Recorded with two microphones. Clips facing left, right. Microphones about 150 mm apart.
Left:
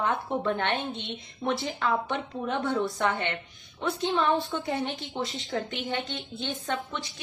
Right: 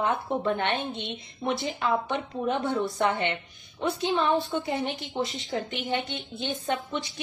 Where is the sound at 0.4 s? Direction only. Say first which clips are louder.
Right 1 dB; 20° right (ahead or behind).